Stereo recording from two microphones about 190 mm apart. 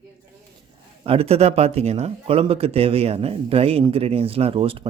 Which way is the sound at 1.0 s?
30° right (ahead or behind).